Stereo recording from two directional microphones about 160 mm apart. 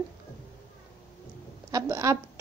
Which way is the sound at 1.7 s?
20° right (ahead or behind).